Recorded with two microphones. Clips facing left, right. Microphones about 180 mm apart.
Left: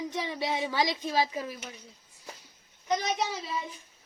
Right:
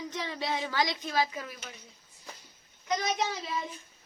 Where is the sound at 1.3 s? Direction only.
35° left (ahead or behind).